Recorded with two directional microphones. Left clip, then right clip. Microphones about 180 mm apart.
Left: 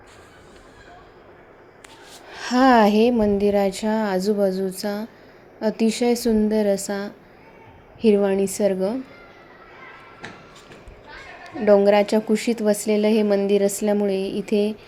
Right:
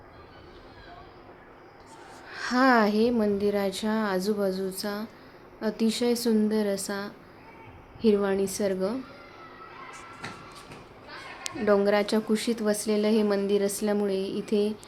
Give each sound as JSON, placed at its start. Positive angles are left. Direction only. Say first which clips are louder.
{"t": 2.3, "sound": "a woman's voice", "louder": "left 6 dB", "side_deg": 20}
{"t": 11.6, "sound": "a woman's voice", "louder": "left 8 dB", "side_deg": 20}